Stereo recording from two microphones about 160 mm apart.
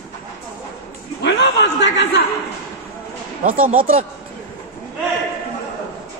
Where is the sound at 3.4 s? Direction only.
60° right (ahead or behind).